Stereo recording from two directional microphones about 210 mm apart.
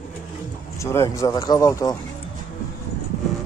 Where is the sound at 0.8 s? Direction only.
15° left (ahead or behind).